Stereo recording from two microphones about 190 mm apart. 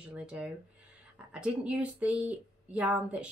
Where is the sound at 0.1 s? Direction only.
5° right (ahead or behind).